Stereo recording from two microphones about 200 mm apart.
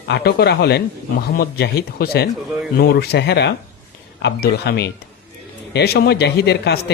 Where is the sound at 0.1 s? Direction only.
55° left (ahead or behind).